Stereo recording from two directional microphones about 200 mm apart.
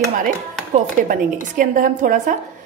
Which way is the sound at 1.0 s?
40° right (ahead or behind).